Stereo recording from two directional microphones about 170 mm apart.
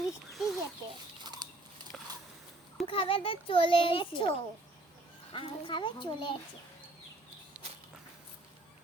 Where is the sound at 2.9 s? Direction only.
30° left (ahead or behind).